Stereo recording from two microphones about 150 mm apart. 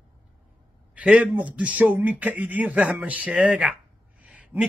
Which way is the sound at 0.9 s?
10° right (ahead or behind).